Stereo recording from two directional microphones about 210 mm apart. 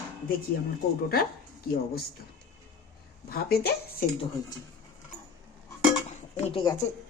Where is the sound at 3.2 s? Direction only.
45° left (ahead or behind).